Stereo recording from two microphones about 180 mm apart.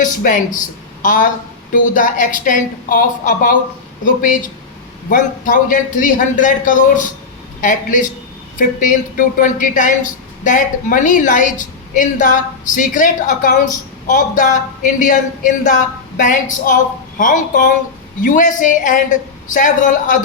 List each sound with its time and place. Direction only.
0.0 s a woman's voice: 45° left (ahead or behind)